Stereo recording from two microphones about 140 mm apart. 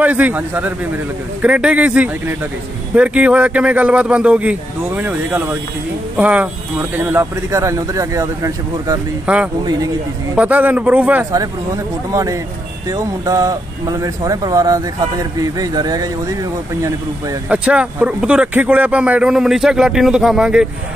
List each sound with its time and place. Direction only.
0.0 s speech: 10° right (ahead or behind)
9.2 s speech: 10° right (ahead or behind)
11.3 s speech: 25° right (ahead or behind)
17.5 s speech: 10° right (ahead or behind)